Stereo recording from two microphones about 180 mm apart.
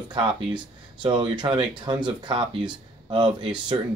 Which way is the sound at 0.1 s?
25° right (ahead or behind).